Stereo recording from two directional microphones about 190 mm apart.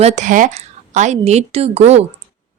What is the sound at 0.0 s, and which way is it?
Speech, 35° right (ahead or behind).